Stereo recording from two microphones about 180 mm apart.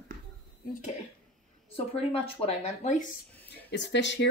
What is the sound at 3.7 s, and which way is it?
Speech, 80° left.